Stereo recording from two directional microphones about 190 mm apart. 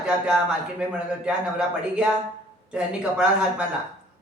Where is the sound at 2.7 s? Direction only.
5° right (ahead or behind).